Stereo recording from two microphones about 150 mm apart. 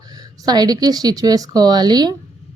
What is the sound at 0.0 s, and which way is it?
Speech, 25° right (ahead or behind).